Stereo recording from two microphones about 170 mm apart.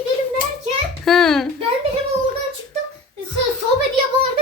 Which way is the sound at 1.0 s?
Centre (ahead or behind).